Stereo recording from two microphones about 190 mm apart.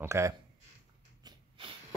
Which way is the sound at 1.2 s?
25° right (ahead or behind).